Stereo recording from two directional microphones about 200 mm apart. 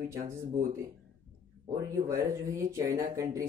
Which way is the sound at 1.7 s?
15° right (ahead or behind).